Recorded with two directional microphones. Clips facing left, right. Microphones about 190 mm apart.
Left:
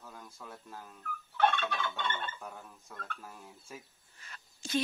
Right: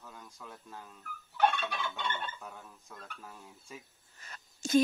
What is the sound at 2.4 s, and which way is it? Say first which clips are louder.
Speech: left 2 dB; centre (ahead or behind).